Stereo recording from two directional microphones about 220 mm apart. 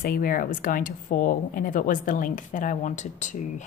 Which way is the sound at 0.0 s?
40° left (ahead or behind).